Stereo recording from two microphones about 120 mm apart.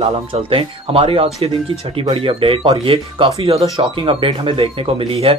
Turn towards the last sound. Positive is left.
turn(degrees=-50)  # may be behind; listen again after turning